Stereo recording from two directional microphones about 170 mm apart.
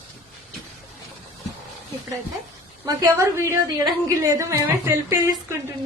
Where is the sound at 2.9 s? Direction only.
20° right (ahead or behind).